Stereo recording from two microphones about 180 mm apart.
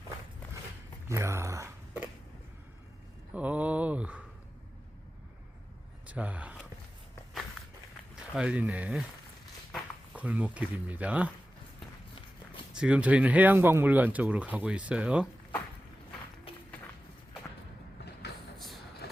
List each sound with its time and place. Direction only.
1.0 s speech: 15° right (ahead or behind)
3.3 s a sound: 10° right (ahead or behind)
6.1 s speech: 10° right (ahead or behind)
8.1 s speech: 5° right (ahead or behind)
12.7 s speech: 5° right (ahead or behind)